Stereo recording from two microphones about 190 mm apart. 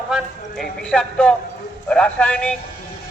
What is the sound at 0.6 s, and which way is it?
A man's voice, 5° left (ahead or behind).